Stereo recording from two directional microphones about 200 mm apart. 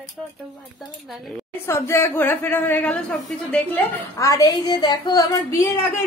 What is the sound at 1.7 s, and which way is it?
A woman's voice, 15° left (ahead or behind).